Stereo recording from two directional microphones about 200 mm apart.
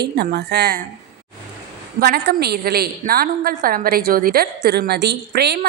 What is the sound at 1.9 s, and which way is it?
A woman's voice, 50° right (ahead or behind).